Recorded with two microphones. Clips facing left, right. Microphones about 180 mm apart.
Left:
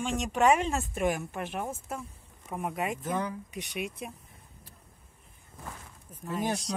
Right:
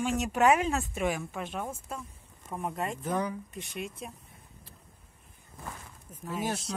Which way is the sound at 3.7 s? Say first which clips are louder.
Left 2 dB; 65° left (ahead or behind).